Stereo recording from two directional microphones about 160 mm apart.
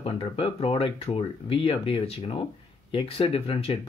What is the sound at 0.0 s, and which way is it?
Speech, 35° left (ahead or behind).